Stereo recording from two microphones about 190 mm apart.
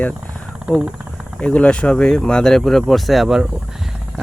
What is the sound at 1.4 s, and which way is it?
Speech, 5° left (ahead or behind).